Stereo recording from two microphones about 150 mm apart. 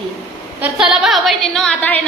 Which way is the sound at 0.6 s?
5° right (ahead or behind).